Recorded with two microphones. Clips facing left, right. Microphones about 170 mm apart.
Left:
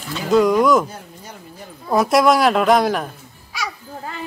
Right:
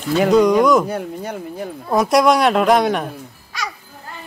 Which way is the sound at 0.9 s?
65° right (ahead or behind).